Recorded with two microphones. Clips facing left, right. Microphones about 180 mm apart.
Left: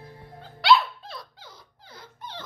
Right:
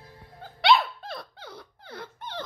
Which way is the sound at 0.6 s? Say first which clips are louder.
Left 1 dB; 55° right (ahead or behind).